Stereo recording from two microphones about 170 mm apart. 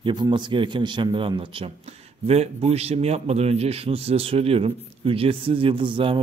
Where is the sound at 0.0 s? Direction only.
25° right (ahead or behind).